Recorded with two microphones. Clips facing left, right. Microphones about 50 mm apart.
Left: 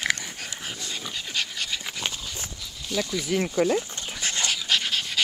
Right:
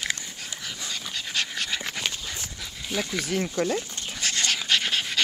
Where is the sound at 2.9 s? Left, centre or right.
Centre.